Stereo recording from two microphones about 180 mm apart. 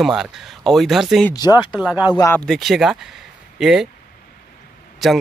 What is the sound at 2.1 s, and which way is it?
Speech, 10° left (ahead or behind).